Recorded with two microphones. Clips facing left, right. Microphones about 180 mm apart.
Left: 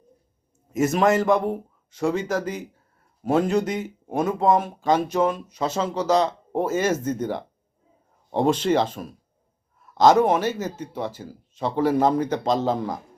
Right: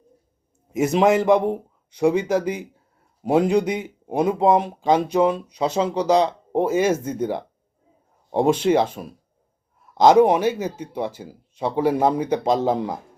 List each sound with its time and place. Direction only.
0.8 s speech: 15° right (ahead or behind)